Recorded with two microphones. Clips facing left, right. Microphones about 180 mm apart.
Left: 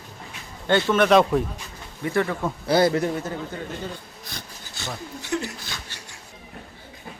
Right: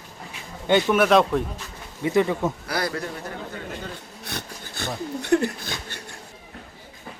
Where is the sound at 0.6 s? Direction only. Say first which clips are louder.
Right 1 dB; 15° right (ahead or behind).